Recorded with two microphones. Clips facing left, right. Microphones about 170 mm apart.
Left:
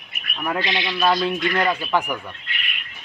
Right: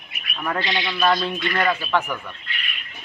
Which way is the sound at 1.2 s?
15° left (ahead or behind).